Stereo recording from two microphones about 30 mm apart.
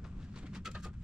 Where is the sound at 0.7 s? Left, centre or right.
Centre.